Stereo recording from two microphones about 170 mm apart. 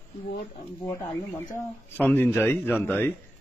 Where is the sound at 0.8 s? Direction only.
20° left (ahead or behind).